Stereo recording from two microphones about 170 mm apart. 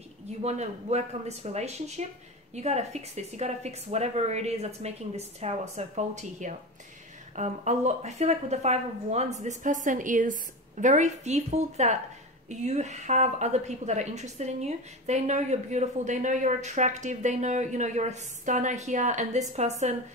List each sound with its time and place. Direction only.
0.4 s a woman's voice: 40° right (ahead or behind)